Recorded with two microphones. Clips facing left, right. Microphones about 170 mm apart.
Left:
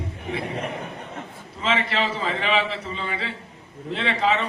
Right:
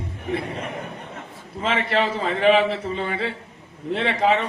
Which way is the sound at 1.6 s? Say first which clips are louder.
Right 2 dB; 50° right (ahead or behind).